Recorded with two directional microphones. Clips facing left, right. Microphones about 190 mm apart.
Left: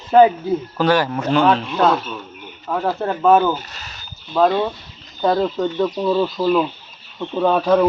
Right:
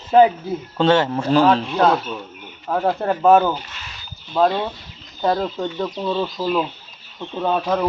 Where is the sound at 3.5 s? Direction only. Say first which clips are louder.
Left 2 dB; 40° left (ahead or behind).